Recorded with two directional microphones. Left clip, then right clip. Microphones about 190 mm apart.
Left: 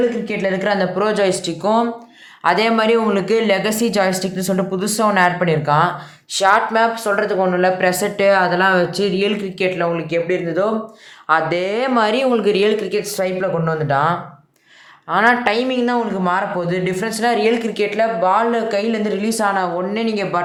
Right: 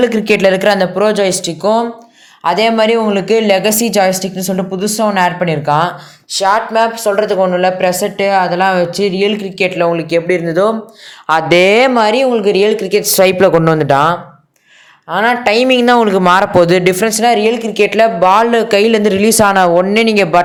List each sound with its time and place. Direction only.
0.0 s speech: 45° right (ahead or behind); by 1.9 s 15° right (ahead or behind)
2.4 s speech: 5° right (ahead or behind)
2.6 s speech: 20° right (ahead or behind)
6.3 s speech: 10° right (ahead or behind); by 11.9 s 40° right (ahead or behind)
11.9 s speech: 25° right (ahead or behind)
15.1 s speech: 15° right (ahead or behind)
15.4 s speech: 35° right (ahead or behind)
17.4 s speech: 10° right (ahead or behind)
17.9 s speech: 45° right (ahead or behind)